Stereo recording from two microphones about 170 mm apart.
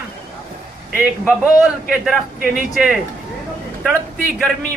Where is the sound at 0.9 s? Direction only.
5° right (ahead or behind).